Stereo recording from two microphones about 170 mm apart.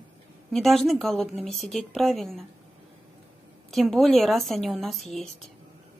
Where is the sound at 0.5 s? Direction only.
Centre (ahead or behind).